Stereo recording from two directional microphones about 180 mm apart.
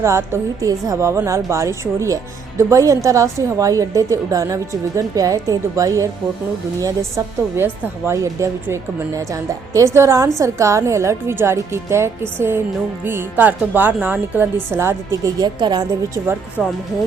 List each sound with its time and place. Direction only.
0.0 s a woman's voice: 15° right (ahead or behind)
7.5 s a woman's voice: 15° right (ahead or behind)
16.6 s a woman's voice: 5° right (ahead or behind)